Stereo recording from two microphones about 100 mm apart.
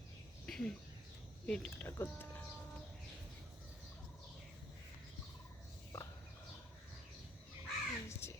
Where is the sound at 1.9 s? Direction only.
25° left (ahead or behind).